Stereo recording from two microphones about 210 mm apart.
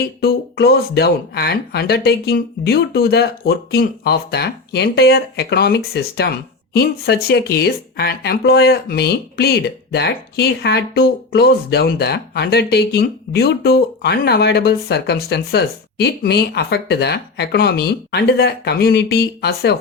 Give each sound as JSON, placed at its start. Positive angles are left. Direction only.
{"t": 0.0, "sound": "speech", "side_deg": 50}